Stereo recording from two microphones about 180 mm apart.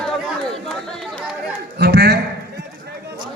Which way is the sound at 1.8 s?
65° right (ahead or behind).